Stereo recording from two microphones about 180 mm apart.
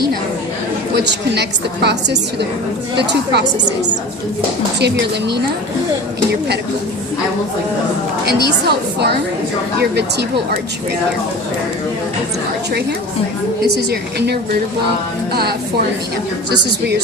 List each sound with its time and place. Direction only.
0.9 s a woman's voice: 70° right (ahead or behind)
8.3 s a woman's voice: 65° right (ahead or behind)
13.7 s a woman's voice: 65° right (ahead or behind)